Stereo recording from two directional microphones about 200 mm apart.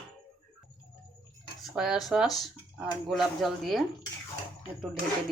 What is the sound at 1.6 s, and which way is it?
Speech, 5° right (ahead or behind).